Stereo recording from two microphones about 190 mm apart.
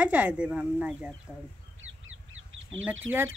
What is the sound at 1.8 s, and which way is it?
Crow, 90° right.